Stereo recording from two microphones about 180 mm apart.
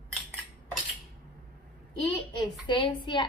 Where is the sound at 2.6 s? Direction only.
25° left (ahead or behind).